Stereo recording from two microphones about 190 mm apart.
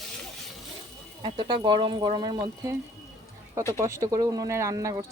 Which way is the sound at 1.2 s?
25° right (ahead or behind).